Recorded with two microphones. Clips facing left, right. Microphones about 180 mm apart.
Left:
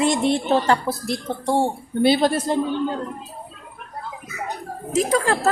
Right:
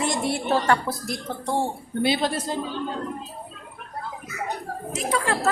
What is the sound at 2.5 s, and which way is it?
Speech, 55° left (ahead or behind).